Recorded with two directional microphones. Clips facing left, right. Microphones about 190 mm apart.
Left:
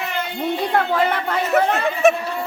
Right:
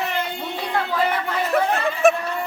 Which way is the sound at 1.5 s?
Centre (ahead or behind).